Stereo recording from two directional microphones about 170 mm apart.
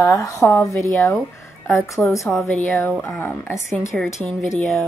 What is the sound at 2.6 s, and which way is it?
A woman's voice, 10° left (ahead or behind).